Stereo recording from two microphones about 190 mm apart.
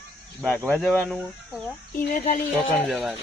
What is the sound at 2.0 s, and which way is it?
Speech, 50° left (ahead or behind).